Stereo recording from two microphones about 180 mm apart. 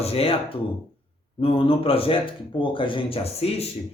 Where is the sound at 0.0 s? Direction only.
35° left (ahead or behind).